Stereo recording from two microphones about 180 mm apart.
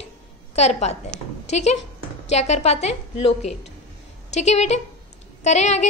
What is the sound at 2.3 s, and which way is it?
Speech, 40° left (ahead or behind).